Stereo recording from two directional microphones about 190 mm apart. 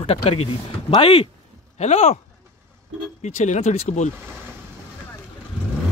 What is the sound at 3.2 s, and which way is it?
Speech, 35° left (ahead or behind).